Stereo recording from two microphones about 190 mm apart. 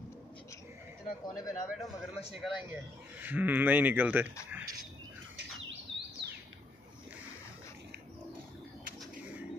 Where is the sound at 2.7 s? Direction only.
10° right (ahead or behind).